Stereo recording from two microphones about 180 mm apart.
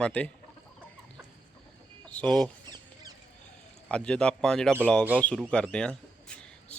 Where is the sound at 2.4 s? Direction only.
25° right (ahead or behind).